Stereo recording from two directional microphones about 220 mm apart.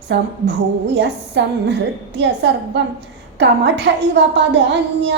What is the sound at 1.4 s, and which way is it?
Female singing, 50° right (ahead or behind).